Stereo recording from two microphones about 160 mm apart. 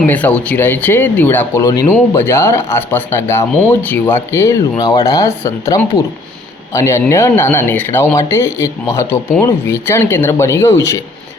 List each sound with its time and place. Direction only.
0.1 s speech: 10° left (ahead or behind)